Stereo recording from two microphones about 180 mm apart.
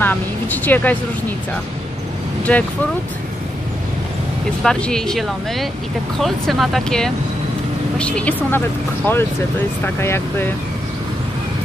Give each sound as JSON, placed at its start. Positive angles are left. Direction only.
{"t": 0.0, "sound": "vehicle", "side_deg": 10}
{"t": 2.5, "sound": "speech", "side_deg": 5}
{"t": 4.6, "sound": "speech", "side_deg": 5}